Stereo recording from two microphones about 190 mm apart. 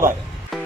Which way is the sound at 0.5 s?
Centre (ahead or behind).